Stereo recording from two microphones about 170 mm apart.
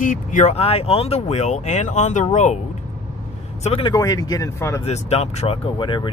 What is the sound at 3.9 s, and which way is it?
Speech, 20° left (ahead or behind).